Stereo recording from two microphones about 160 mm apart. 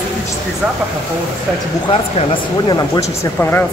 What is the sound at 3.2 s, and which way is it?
Speech, 15° left (ahead or behind).